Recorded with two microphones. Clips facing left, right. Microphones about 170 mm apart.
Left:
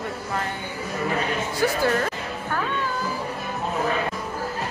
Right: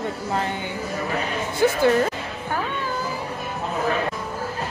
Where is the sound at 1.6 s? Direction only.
20° right (ahead or behind).